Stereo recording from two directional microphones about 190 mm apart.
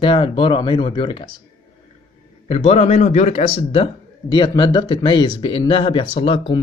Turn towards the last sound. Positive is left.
turn(degrees=25)  # may be behind; listen again after turning